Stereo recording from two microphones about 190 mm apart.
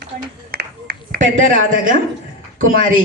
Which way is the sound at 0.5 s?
55° right (ahead or behind).